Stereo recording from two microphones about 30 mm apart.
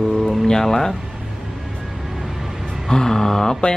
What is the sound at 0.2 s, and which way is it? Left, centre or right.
Music, centre.